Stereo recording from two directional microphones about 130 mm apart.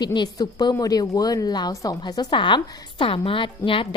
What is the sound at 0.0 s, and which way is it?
A woman's voice, 35° left (ahead or behind).